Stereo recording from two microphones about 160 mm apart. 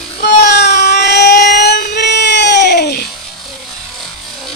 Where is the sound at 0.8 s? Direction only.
90° left.